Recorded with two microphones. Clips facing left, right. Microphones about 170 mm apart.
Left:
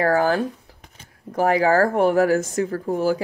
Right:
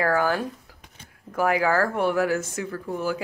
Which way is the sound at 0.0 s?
35° left (ahead or behind).